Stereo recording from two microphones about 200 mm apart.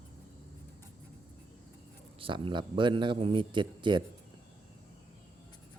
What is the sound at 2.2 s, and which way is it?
Speech, 25° right (ahead or behind).